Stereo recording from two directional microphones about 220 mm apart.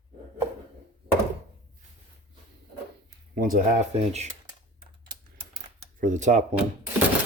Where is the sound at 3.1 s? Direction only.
40° right (ahead or behind).